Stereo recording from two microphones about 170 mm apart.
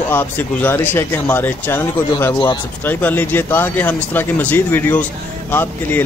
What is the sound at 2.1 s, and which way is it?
Speech, 25° left (ahead or behind).